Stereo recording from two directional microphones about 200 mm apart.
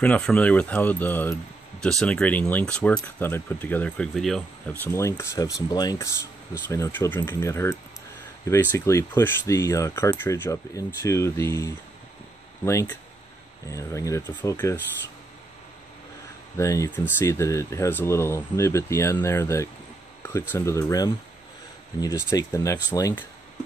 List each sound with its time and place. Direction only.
0.0 s speech: 5° left (ahead or behind)
16.5 s speech: 15° left (ahead or behind)